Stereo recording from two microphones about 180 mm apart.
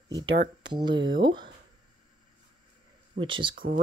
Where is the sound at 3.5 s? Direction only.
50° right (ahead or behind).